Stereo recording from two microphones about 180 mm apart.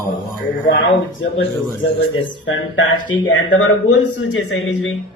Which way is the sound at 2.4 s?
90° left.